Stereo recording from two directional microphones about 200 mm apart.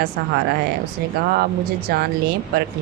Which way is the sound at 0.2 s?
50° right (ahead or behind).